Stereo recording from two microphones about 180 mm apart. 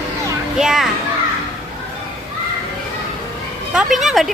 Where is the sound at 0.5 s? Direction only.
Centre (ahead or behind).